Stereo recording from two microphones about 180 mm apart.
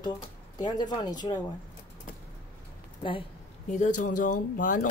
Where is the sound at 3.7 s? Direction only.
45° left (ahead or behind).